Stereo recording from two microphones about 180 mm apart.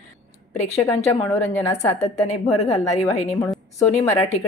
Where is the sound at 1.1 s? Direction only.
15° left (ahead or behind).